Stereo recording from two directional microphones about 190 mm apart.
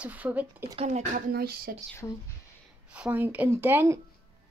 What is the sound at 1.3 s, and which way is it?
Speech, 55° right (ahead or behind).